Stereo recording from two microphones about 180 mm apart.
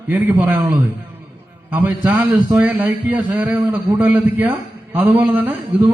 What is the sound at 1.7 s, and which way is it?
A man's voice, 10° right (ahead or behind).